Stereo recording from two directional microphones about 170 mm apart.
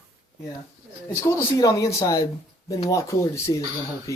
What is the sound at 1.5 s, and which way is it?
Speech, 20° left (ahead or behind).